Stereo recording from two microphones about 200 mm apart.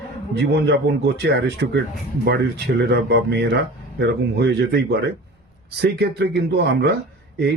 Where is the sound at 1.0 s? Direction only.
55° right (ahead or behind).